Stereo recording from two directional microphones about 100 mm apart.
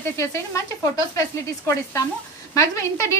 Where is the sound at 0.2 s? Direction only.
30° left (ahead or behind).